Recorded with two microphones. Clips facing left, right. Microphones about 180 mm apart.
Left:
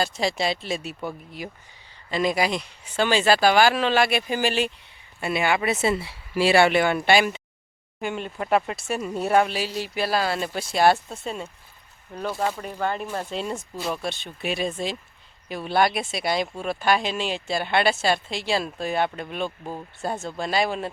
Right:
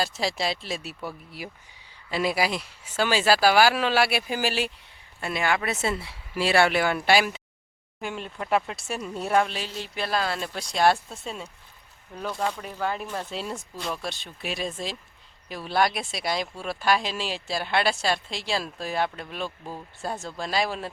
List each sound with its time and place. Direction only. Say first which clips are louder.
0.0 s speech: left 3 dB; centre (ahead or behind)
19.5 s speech: left 3 dB; 20° left (ahead or behind)
20.0 s speech: left 3 dB; centre (ahead or behind)